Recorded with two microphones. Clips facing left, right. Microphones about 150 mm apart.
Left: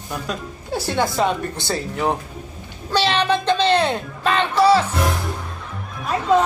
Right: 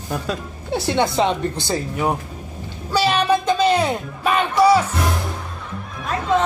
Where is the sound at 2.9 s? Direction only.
10° right (ahead or behind).